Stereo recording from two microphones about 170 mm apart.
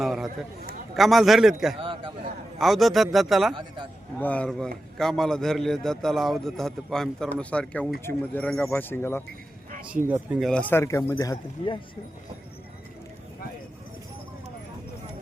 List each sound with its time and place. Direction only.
0.0 s a man's voice: centre (ahead or behind)
1.8 s a sound: 30° right (ahead or behind)
2.6 s a man's voice: centre (ahead or behind)
9.9 s speech: 10° right (ahead or behind)
10.5 s a man's voice: 10° left (ahead or behind)